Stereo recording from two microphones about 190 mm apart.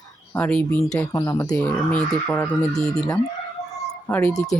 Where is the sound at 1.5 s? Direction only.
5° left (ahead or behind).